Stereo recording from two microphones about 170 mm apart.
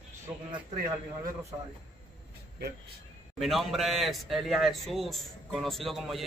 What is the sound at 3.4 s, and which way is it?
A man's voice, centre (ahead or behind).